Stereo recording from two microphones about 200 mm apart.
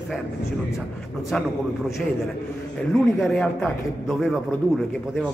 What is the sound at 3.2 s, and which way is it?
Speech, centre (ahead or behind).